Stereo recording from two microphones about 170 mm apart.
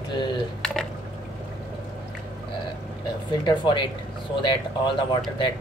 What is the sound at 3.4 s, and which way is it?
Speech, 30° left (ahead or behind).